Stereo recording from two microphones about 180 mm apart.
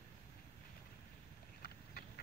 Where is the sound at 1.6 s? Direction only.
55° left (ahead or behind).